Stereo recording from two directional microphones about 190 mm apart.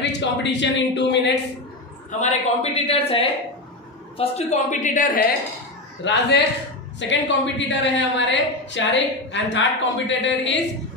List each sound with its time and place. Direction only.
0.0 s a woman's voice: 65° left (ahead or behind)
2.0 s a man's voice: 40° left (ahead or behind)
6.0 s a woman's voice: 75° left (ahead or behind)